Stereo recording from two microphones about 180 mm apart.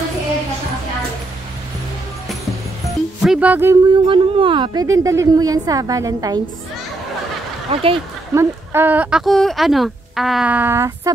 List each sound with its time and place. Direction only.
3.2 s speech: 5° right (ahead or behind)
3.8 s a woman's voice: 25° right (ahead or behind)
7.7 s speech: 30° right (ahead or behind)
8.4 s speech: 10° right (ahead or behind)